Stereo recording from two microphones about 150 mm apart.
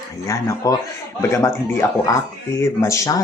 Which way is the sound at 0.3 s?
20° left (ahead or behind).